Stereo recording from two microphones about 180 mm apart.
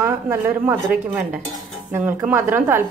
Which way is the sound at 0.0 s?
10° right (ahead or behind).